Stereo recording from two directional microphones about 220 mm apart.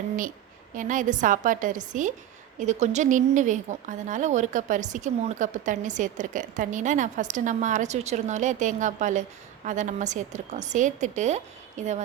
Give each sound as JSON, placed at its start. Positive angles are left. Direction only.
{"t": 0.7, "sound": "speech", "side_deg": -35}